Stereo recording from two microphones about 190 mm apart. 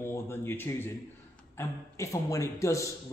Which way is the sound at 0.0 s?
10° left (ahead or behind).